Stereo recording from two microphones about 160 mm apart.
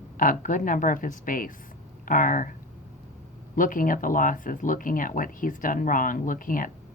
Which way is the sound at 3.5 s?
55° left (ahead or behind).